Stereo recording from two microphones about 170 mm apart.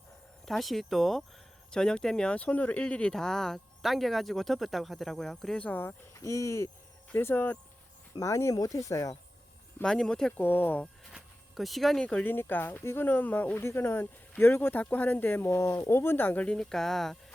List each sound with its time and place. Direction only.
0.4 s speech: centre (ahead or behind); by 9.1 s 20° left (ahead or behind)
9.7 s speech: 5° left (ahead or behind)
11.1 s speech: centre (ahead or behind)